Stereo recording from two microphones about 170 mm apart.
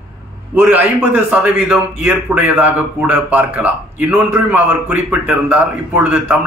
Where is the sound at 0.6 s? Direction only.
10° right (ahead or behind).